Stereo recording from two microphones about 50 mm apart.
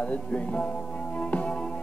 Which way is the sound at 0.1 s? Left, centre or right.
Left.